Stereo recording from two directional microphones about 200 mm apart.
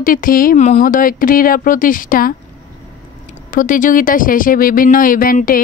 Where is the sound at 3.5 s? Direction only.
40° left (ahead or behind).